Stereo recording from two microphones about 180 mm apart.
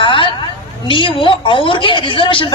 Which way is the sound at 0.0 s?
30° left (ahead or behind).